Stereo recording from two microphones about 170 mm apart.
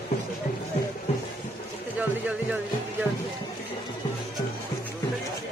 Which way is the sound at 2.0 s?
10° right (ahead or behind).